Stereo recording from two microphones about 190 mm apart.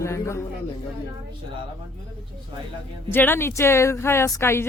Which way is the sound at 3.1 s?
10° left (ahead or behind).